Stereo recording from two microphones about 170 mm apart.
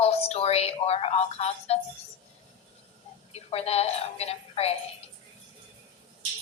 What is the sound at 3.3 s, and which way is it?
A woman's voice, 35° left (ahead or behind).